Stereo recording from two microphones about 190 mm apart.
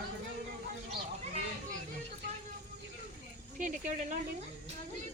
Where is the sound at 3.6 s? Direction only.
40° right (ahead or behind).